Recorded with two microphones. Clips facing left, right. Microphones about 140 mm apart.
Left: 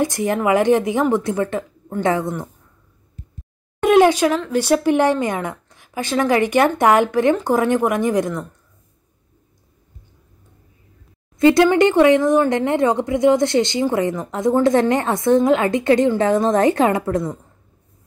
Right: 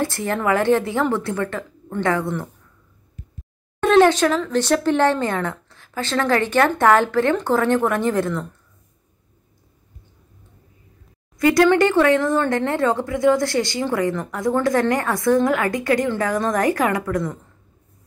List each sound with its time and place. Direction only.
0.0 s speech: 15° left (ahead or behind)
3.8 s a woman's voice: 15° left (ahead or behind)
11.3 s speech: 25° left (ahead or behind)